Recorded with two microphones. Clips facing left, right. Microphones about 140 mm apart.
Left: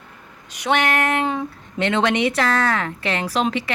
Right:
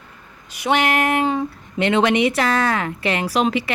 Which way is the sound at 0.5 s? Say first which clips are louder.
Right 1 dB; 5° right (ahead or behind).